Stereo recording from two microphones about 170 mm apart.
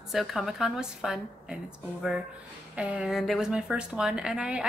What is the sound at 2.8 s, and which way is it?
A woman's voice, 5° right (ahead or behind).